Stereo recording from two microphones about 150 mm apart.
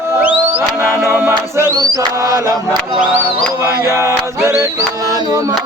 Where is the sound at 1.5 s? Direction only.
20° right (ahead or behind).